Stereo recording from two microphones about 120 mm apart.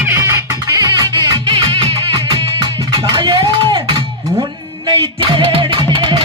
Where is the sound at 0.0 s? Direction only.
20° right (ahead or behind); by 3.8 s 45° right (ahead or behind).